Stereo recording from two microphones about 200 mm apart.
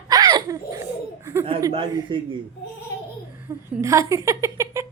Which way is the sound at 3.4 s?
15° right (ahead or behind).